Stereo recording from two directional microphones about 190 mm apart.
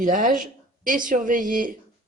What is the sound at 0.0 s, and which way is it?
A woman's voice, 45° right (ahead or behind).